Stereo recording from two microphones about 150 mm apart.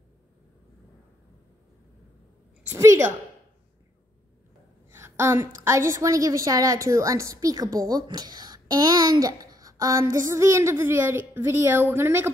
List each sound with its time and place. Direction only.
2.7 s a woman's voice: 20° right (ahead or behind)
4.9 s a woman's voice: 15° right (ahead or behind)